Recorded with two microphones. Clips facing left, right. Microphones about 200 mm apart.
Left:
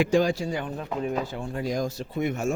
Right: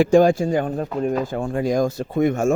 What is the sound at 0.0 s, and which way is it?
Speech, 50° right (ahead or behind).